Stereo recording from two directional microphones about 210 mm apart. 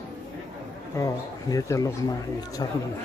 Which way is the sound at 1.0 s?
15° left (ahead or behind).